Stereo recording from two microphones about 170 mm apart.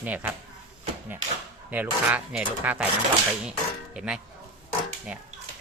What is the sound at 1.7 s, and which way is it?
Speech, 10° right (ahead or behind).